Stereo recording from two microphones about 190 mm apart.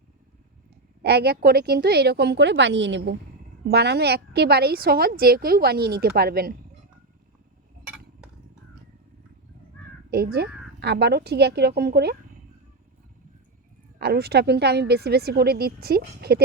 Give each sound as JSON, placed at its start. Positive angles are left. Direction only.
{"t": 1.0, "sound": "a woman's voice", "side_deg": -60}
{"t": 10.1, "sound": "a woman's voice", "side_deg": -55}
{"t": 14.0, "sound": "a woman's voice", "side_deg": -55}